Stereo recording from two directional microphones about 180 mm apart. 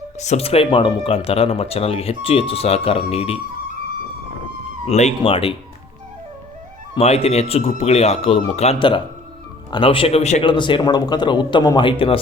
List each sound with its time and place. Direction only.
0.2 s speech: 35° left (ahead or behind)
4.9 s speech: 40° left (ahead or behind)
6.9 s speech: 35° left (ahead or behind)